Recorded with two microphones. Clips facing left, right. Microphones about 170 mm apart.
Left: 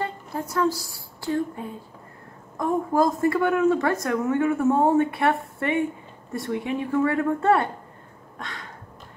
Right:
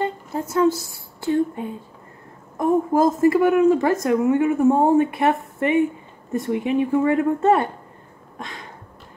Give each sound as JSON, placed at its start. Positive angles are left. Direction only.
{"t": 0.0, "sound": "speech", "side_deg": -25}
{"t": 2.5, "sound": "a woman's voice", "side_deg": -20}
{"t": 8.4, "sound": "a sound", "side_deg": -20}